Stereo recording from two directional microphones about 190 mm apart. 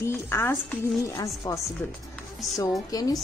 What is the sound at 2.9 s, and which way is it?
Speech, 20° left (ahead or behind).